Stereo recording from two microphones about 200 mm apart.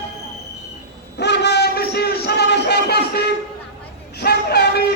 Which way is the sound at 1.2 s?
60° left (ahead or behind).